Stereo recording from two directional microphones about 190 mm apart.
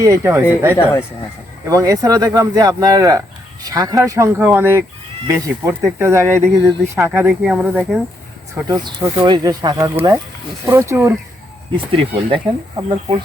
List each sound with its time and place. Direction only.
0.0 s speech: 15° right (ahead or behind)
1.6 s speech: 15° right (ahead or behind)
8.6 s speech: 20° right (ahead or behind)
11.9 s speech: 30° right (ahead or behind)